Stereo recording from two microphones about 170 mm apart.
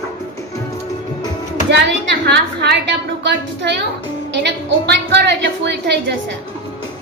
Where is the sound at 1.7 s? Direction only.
85° right.